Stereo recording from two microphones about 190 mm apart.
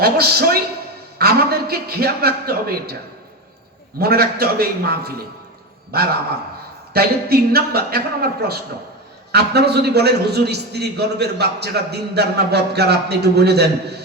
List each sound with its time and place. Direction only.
0.0 s a man's voice: 55° right (ahead or behind)
3.9 s a man's voice: 55° right (ahead or behind)
6.9 s a man's voice: 55° right (ahead or behind)